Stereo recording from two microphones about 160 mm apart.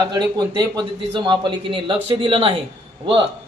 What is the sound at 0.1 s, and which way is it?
A man's voice, 25° right (ahead or behind).